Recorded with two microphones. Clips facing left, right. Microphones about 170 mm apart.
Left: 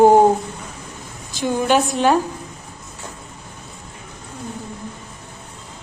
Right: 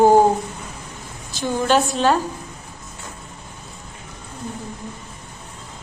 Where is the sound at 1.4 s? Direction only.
15° left (ahead or behind).